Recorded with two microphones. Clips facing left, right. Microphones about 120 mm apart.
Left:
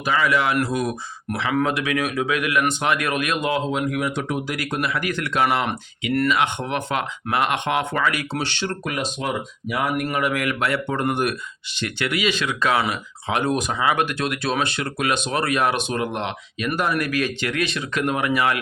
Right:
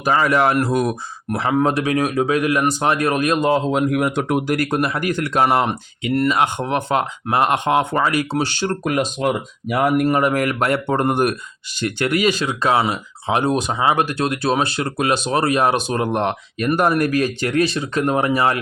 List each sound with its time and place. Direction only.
0.0 s speech: 40° right (ahead or behind)
3.7 s speech: 50° right (ahead or behind)